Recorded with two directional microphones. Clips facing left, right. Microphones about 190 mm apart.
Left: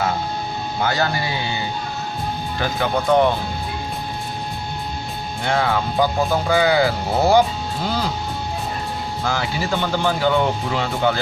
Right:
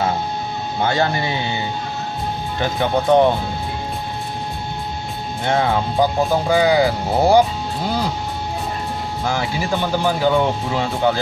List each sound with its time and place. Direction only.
0.7 s speech: 25° right (ahead or behind)
2.6 s speech: 20° right (ahead or behind)
5.4 s speech: 20° right (ahead or behind)
9.2 s speech: 15° right (ahead or behind)